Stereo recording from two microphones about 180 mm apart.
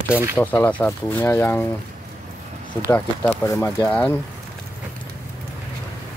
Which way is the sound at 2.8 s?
10° left (ahead or behind).